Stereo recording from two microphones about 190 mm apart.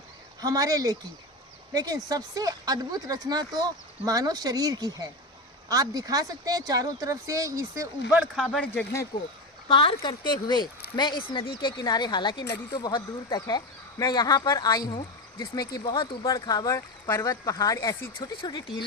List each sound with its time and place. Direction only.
0.4 s speech: 20° right (ahead or behind)
8.1 s speech: 5° right (ahead or behind); by 9.0 s 10° left (ahead or behind)
9.6 s speech: 25° left (ahead or behind)